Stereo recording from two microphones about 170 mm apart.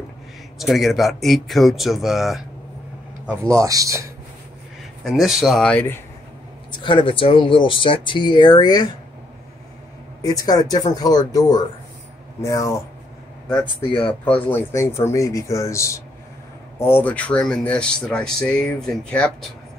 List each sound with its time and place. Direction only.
0.6 s speech: centre (ahead or behind)
3.4 s speech: 20° right (ahead or behind)
5.0 s speech: centre (ahead or behind)
6.8 s speech: 30° left (ahead or behind)
10.2 s speech: 20° left (ahead or behind)
14.5 s speech: 15° left (ahead or behind)